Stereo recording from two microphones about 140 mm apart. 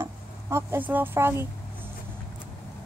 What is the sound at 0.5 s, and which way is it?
Speech, 15° right (ahead or behind).